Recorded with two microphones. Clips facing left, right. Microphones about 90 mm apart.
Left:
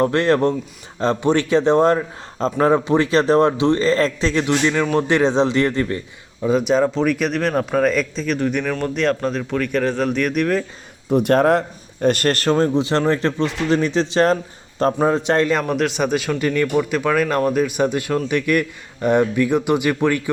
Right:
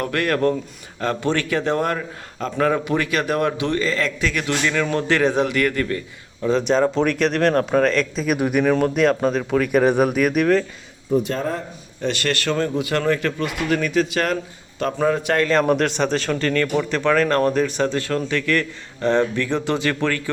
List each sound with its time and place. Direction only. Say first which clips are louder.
0.0 s a man's voice: left 4 dB; 25° left (ahead or behind)
6.4 s a man's voice: left 1 dB; 10° left (ahead or behind)
11.1 s speech: left 7 dB; 65° left (ahead or behind)
12.0 s a man's voice: left 5 dB; 45° left (ahead or behind); by 15.4 s 25° left (ahead or behind)
15.6 s a man's voice: right 1 dB; centre (ahead or behind)